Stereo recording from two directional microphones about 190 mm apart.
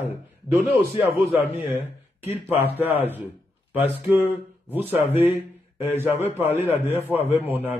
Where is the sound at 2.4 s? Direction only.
10° right (ahead or behind).